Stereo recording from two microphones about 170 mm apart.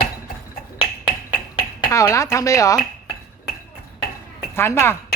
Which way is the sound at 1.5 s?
20° left (ahead or behind).